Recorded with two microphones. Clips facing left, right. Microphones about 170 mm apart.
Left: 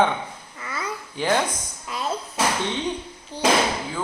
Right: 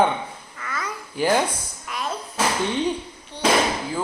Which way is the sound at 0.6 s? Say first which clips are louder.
Right 1 dB; 25° left (ahead or behind).